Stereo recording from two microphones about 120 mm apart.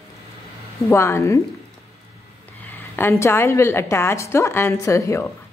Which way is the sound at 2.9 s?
20° left (ahead or behind).